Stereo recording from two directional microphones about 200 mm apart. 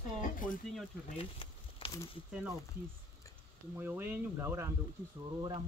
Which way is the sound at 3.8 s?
10° right (ahead or behind).